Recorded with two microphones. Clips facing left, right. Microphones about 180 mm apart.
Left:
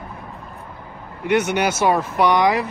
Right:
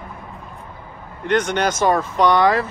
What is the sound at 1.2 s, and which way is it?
Speech, 10° left (ahead or behind).